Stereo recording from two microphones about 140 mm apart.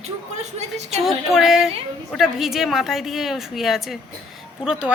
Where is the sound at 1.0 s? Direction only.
Centre (ahead or behind).